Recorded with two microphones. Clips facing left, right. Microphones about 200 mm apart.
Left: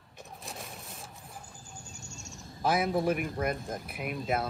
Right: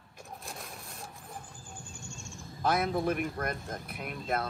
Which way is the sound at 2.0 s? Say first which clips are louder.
Right 2 dB; 40° left (ahead or behind).